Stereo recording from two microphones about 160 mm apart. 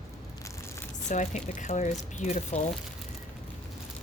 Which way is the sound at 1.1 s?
50° left (ahead or behind).